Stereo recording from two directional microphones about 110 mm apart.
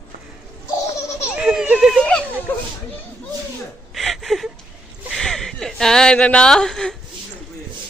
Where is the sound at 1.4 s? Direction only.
10° right (ahead or behind).